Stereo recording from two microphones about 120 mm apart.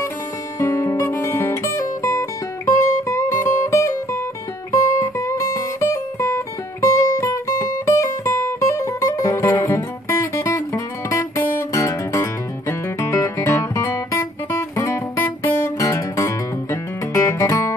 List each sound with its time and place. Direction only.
0.6 s music: 20° left (ahead or behind)